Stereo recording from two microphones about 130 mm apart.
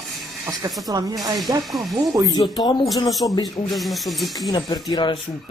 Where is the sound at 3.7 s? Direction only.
Centre (ahead or behind).